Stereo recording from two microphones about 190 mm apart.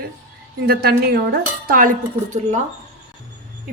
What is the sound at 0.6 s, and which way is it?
A woman's voice, 55° right (ahead or behind).